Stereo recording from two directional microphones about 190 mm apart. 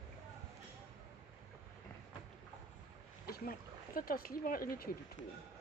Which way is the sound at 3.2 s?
50° left (ahead or behind).